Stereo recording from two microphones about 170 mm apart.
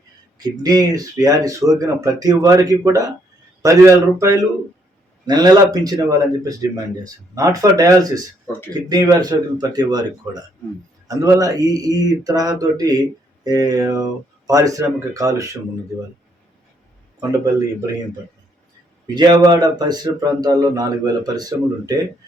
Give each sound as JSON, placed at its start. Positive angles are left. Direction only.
{"t": 0.3, "sound": "speech", "side_deg": -25}
{"t": 17.2, "sound": "speech", "side_deg": -20}
{"t": 19.0, "sound": "speech", "side_deg": -25}